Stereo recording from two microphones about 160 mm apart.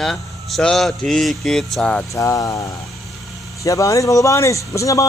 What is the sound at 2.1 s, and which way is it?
A man's voice, 20° left (ahead or behind).